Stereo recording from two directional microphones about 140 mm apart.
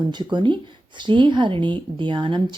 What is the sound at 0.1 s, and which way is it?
Speech, 30° right (ahead or behind).